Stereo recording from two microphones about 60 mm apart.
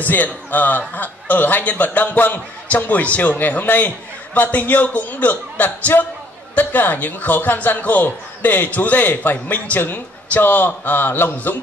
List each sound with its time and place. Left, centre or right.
0.0 s speech: left